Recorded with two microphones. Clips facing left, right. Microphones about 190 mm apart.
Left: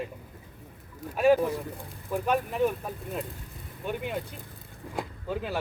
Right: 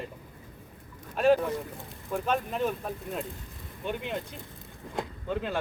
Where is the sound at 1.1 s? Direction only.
5° left (ahead or behind).